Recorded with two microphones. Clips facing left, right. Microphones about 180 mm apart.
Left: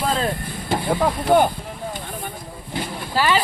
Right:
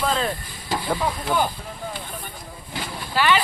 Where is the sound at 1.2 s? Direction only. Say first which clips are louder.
Left 8 dB; 55° left (ahead or behind).